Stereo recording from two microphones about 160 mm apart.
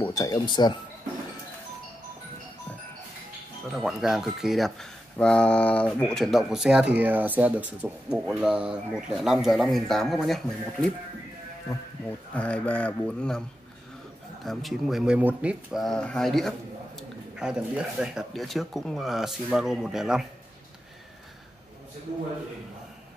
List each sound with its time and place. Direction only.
0.0 s speech: 20° left (ahead or behind)
3.7 s speech: 5° right (ahead or behind)
12.4 s speech: 10° left (ahead or behind)
14.4 s speech: centre (ahead or behind)